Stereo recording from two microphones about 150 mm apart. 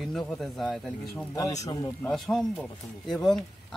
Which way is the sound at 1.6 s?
25° left (ahead or behind).